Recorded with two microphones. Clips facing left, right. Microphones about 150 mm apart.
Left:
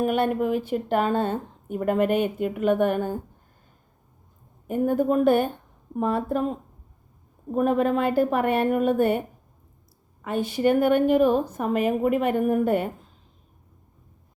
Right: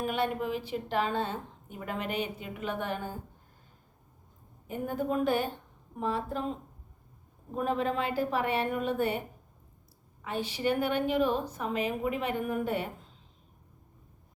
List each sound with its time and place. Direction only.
0.0 s speech: 50° left (ahead or behind)
4.7 s a woman's voice: 55° left (ahead or behind)
10.2 s speech: 50° left (ahead or behind)